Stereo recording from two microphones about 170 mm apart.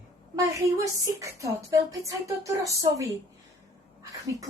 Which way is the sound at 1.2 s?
20° right (ahead or behind).